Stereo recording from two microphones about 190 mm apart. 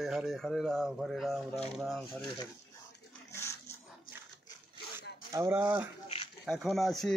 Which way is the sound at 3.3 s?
15° left (ahead or behind).